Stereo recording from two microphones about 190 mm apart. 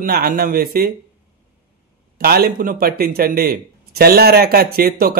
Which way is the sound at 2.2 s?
55° right (ahead or behind).